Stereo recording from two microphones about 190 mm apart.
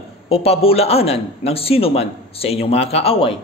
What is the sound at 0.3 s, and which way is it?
A man's voice, 30° left (ahead or behind).